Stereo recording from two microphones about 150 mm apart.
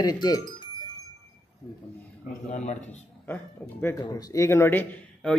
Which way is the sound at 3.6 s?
20° left (ahead or behind).